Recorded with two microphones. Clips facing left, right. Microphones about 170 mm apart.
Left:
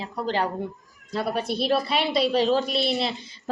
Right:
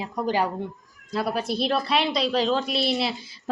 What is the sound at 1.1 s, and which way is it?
A woman's voice, centre (ahead or behind).